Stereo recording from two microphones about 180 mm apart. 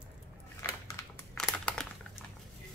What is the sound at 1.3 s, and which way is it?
Crumpling, 5° left (ahead or behind).